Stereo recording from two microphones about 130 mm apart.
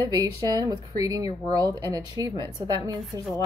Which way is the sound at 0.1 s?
30° right (ahead or behind).